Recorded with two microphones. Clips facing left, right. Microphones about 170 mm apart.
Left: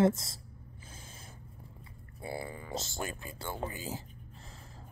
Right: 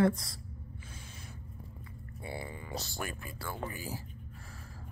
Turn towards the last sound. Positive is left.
turn(degrees=20)  # may be behind; listen again after turning